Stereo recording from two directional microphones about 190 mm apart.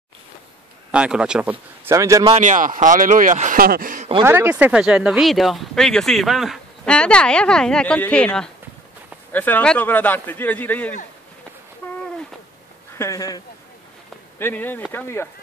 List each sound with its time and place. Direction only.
0.9 s speech: 5° right (ahead or behind)
2.3 s speech: 40° right (ahead or behind)
4.2 s a man's voice: 10° right (ahead or behind); by 11.0 s 10° left (ahead or behind)
12.9 s speech: 15° left (ahead or behind)
14.4 s a man's voice: 10° left (ahead or behind)